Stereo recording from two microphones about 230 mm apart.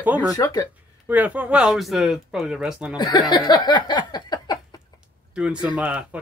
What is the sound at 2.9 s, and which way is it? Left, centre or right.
Speech, centre.